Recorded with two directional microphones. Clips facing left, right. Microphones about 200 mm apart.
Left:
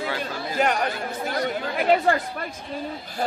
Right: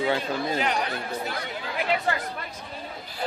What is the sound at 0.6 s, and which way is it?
Chatter, 50° left (ahead or behind).